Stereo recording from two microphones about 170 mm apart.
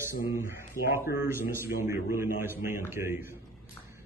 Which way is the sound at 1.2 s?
15° right (ahead or behind).